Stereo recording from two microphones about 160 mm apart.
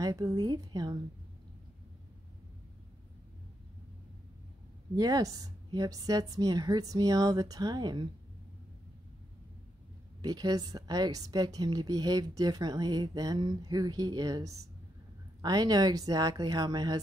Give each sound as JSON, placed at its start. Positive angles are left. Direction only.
{"t": 0.0, "sound": "a woman's voice", "side_deg": -20}
{"t": 4.9, "sound": "a woman's voice", "side_deg": -25}
{"t": 10.2, "sound": "a woman's voice", "side_deg": -25}